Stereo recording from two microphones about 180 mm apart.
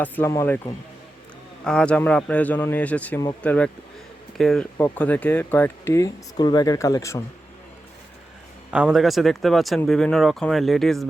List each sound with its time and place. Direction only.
0.0 s speech: 15° left (ahead or behind)
8.7 s speech: 5° right (ahead or behind)